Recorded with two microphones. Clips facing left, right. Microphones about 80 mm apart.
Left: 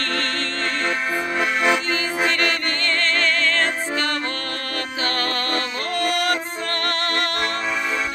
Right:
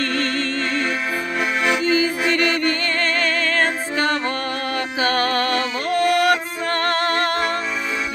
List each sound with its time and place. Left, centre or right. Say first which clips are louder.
5.0 s music: right 6 dB; centre